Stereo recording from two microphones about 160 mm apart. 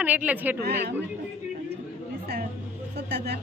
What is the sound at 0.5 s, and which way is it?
Speech, 90° right.